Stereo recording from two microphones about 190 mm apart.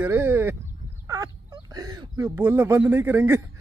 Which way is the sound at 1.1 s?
15° right (ahead or behind).